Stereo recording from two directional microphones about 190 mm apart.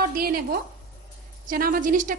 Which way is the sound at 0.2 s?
50° right (ahead or behind).